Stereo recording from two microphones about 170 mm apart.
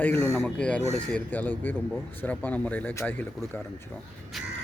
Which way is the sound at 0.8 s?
40° right (ahead or behind).